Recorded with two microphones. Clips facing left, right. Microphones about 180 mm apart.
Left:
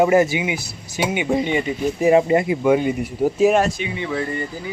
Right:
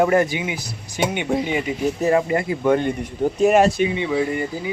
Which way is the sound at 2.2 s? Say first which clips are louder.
Left 4 dB; 20° left (ahead or behind).